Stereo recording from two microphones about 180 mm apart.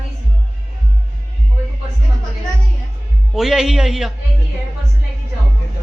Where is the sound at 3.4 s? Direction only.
Centre (ahead or behind).